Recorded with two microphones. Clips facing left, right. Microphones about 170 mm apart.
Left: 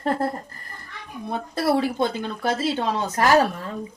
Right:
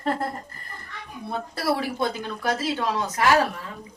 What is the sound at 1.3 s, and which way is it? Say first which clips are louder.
Speech: left 4 dB; 25° left (ahead or behind).